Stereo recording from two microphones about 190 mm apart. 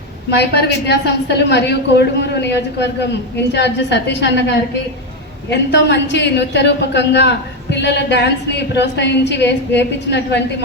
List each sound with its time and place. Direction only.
0.3 s a woman's voice: 60° left (ahead or behind)